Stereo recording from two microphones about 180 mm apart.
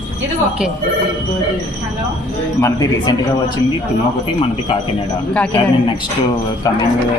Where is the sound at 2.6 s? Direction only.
20° left (ahead or behind).